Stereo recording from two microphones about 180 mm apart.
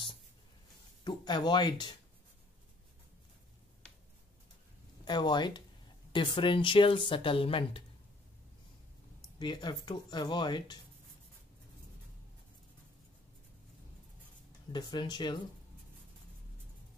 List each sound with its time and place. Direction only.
1.0 s speech: 25° left (ahead or behind)
5.0 s speech: 25° left (ahead or behind)
9.4 s speech: 25° left (ahead or behind)
14.7 s speech: 25° left (ahead or behind)